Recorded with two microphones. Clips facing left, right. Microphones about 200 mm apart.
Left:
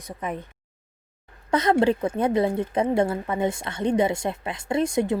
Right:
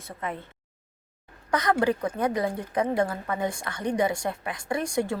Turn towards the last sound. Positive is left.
turn(degrees=20)  # may be behind; listen again after turning